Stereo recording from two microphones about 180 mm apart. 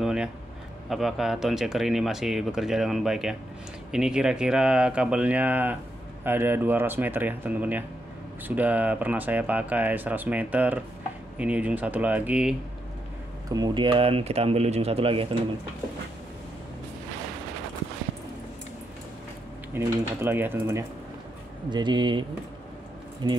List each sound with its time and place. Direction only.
0.0 s a sound: 5° right (ahead or behind)
0.8 s speech: centre (ahead or behind)
13.5 s speech: 25° right (ahead or behind)
19.7 s speech: 10° right (ahead or behind)
21.6 s speech: 25° right (ahead or behind)
23.2 s speech: 25° right (ahead or behind)